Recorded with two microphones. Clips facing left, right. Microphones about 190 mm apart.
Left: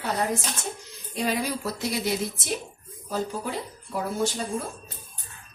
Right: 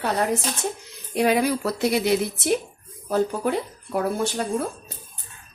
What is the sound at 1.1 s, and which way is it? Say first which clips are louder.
Speech: right 7 dB; 65° right (ahead or behind).